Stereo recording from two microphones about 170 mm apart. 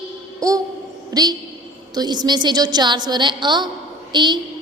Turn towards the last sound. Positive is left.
turn(degrees=-25)  # may be behind; listen again after turning